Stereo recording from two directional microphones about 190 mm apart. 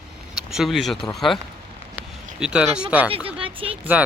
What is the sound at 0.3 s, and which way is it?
Speech, centre (ahead or behind).